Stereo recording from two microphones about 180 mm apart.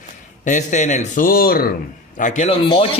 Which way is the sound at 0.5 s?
45° left (ahead or behind).